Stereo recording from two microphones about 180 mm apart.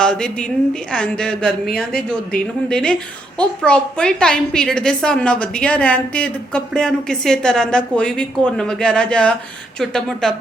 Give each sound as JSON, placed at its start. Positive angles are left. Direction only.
{"t": 0.0, "sound": "speech", "side_deg": 5}